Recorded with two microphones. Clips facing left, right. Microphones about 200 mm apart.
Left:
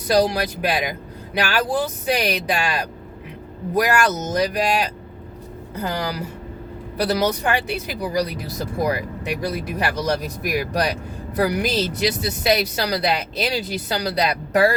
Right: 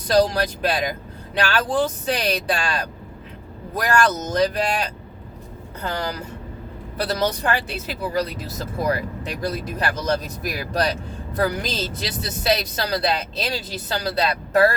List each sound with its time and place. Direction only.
0.1 s speech: 10° left (ahead or behind)